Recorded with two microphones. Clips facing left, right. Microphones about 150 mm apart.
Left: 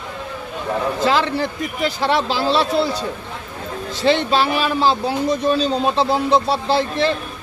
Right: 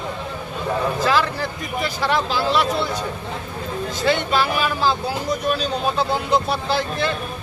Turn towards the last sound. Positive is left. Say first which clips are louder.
# left 4 dB
turn(degrees=30)  # may be behind; listen again after turning